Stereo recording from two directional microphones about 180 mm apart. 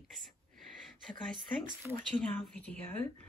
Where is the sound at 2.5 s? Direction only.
5° left (ahead or behind).